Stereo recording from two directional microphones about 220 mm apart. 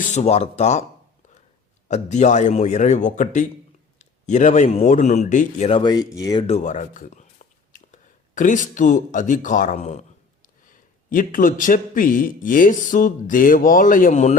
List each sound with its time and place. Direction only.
0.0 s a man's voice: 30° left (ahead or behind)
1.9 s a man's voice: 35° left (ahead or behind); by 6.4 s 15° left (ahead or behind)
6.5 s a sound: 35° left (ahead or behind)
8.4 s a man's voice: 35° left (ahead or behind)
11.1 s a man's voice: 40° left (ahead or behind)